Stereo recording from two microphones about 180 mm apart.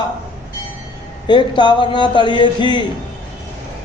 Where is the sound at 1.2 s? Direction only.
25° left (ahead or behind).